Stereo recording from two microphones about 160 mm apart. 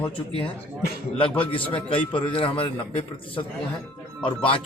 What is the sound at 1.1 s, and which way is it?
A man's voice, 35° left (ahead or behind).